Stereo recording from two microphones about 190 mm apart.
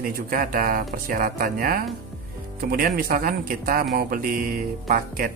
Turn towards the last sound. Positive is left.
turn(degrees=-50)  # may be behind; listen again after turning